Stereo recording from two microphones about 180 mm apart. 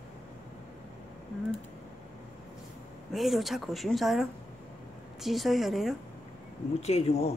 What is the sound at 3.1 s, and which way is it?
Speech, centre (ahead or behind).